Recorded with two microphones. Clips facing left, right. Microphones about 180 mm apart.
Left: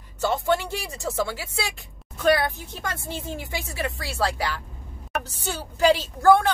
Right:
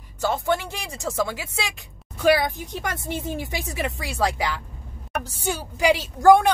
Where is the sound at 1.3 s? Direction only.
15° right (ahead or behind).